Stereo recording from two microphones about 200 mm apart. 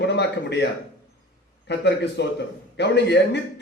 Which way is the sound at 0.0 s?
60° left (ahead or behind).